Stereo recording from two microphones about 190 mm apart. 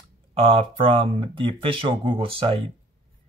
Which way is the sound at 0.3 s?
30° right (ahead or behind).